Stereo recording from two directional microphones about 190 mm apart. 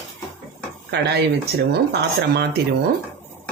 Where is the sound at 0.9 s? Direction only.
60° right (ahead or behind).